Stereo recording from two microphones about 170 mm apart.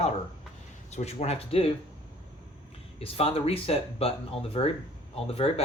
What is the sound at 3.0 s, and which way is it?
Speech, 35° left (ahead or behind).